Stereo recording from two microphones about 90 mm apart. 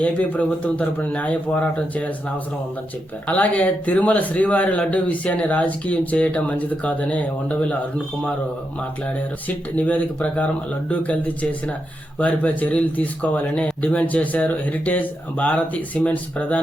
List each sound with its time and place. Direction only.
0.0 s speech: 15° left (ahead or behind)
3.2 s speech: 15° left (ahead or behind)
9.7 s speech: 15° left (ahead or behind)
12.2 s speech: 15° left (ahead or behind)